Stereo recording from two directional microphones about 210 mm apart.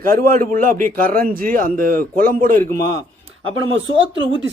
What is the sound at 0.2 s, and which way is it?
A man's voice, 40° right (ahead or behind).